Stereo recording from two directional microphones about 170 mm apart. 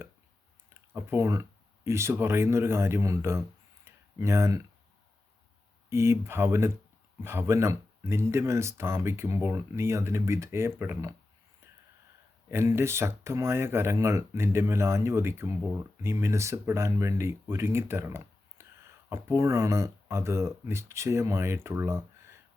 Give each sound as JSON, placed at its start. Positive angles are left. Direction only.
{"t": 0.7, "sound": "speech", "side_deg": -15}
{"t": 3.8, "sound": "a sound", "side_deg": -15}
{"t": 5.9, "sound": "speech", "side_deg": -15}
{"t": 12.5, "sound": "speech", "side_deg": -15}